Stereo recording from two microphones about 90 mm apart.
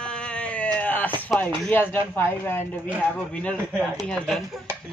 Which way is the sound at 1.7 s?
20° left (ahead or behind).